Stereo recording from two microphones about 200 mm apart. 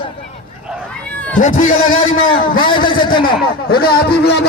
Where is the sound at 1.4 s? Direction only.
40° left (ahead or behind).